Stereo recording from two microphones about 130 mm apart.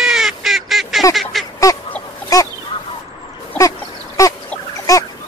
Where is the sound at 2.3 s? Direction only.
25° left (ahead or behind).